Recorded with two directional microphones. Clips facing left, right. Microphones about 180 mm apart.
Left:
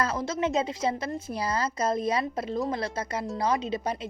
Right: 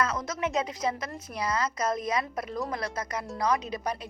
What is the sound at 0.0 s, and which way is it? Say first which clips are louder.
A woman's voice: left 2 dB; 30° left (ahead or behind).